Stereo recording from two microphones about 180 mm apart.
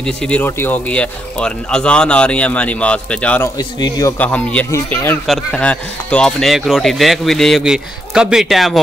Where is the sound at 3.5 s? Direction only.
20° left (ahead or behind).